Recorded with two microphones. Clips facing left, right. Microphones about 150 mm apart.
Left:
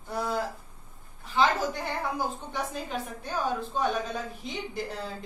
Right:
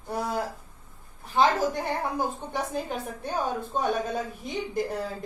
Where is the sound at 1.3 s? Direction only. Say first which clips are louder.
Right 3 dB; 50° right (ahead or behind).